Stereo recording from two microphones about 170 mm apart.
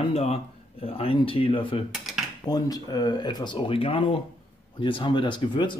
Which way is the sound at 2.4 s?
20° left (ahead or behind).